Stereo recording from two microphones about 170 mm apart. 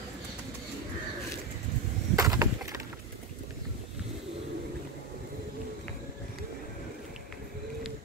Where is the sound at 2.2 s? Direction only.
20° right (ahead or behind).